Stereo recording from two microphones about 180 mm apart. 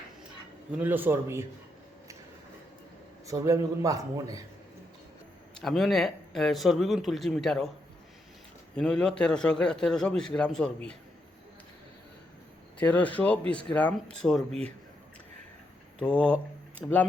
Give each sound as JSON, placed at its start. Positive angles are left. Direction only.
{"t": 0.8, "sound": "a man's voice", "side_deg": -10}
{"t": 3.2, "sound": "a man's voice", "side_deg": -15}
{"t": 5.5, "sound": "a man's voice", "side_deg": 0}
{"t": 8.7, "sound": "a man's voice", "side_deg": 5}
{"t": 12.8, "sound": "a man's voice", "side_deg": 10}
{"t": 16.0, "sound": "a man's voice", "side_deg": 5}